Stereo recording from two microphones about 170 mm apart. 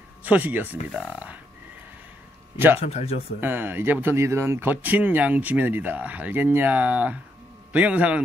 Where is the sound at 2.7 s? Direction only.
40° left (ahead or behind).